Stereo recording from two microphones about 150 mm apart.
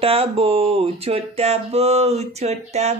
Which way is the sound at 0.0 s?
40° right (ahead or behind).